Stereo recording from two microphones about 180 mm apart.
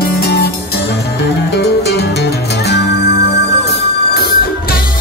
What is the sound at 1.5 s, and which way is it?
Music, 65° left (ahead or behind).